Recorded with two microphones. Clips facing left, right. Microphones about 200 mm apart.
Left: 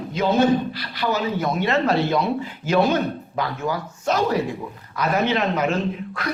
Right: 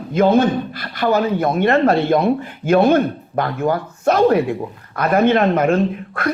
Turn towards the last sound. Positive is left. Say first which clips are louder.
# right 6 dB
turn(degrees=-55)  # may be behind; listen again after turning